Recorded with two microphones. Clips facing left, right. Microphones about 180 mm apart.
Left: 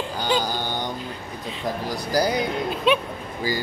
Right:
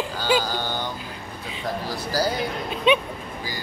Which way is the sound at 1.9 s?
15° left (ahead or behind).